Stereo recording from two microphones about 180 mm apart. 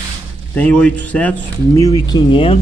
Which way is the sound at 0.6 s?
10° left (ahead or behind).